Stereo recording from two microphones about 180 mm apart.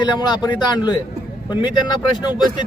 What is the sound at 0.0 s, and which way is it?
Speech, 25° left (ahead or behind).